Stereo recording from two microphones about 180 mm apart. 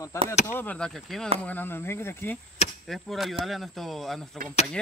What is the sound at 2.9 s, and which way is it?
Speech, centre (ahead or behind).